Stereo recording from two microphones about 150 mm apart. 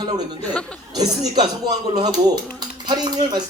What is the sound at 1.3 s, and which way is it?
Speech, 30° right (ahead or behind).